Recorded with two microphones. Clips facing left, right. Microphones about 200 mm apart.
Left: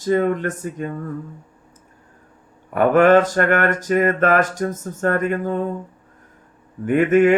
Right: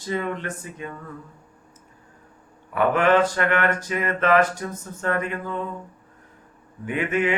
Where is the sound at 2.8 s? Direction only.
45° left (ahead or behind).